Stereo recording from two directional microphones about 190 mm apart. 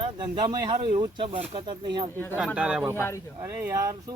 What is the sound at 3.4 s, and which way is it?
Speech, 15° right (ahead or behind).